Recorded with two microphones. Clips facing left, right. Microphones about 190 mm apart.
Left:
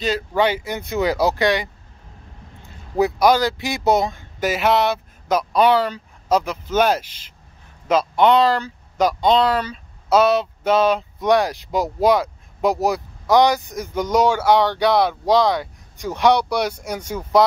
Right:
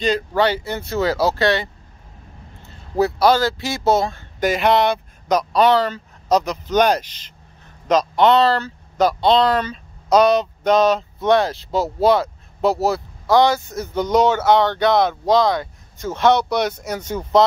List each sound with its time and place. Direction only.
0.0 s speech: 10° left (ahead or behind)
3.0 s speech: 15° left (ahead or behind)
4.4 s speech: 5° left (ahead or behind)